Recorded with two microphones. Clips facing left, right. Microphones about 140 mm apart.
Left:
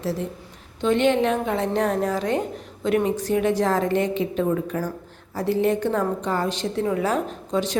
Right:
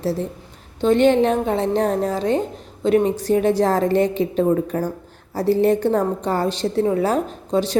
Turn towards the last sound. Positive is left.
turn(degrees=-35)  # may be behind; listen again after turning